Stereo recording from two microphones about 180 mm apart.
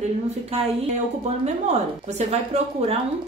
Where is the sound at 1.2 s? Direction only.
40° right (ahead or behind).